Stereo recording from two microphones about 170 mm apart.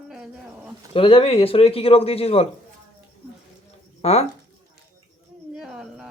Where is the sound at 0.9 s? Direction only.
35° left (ahead or behind).